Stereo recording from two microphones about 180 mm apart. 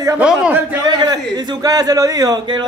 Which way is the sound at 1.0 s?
20° right (ahead or behind).